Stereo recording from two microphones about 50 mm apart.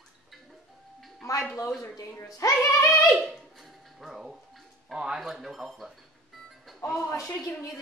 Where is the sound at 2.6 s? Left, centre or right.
Left.